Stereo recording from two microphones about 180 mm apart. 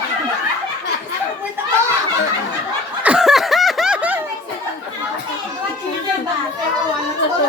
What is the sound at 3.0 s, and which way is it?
Snicker, 5° right (ahead or behind).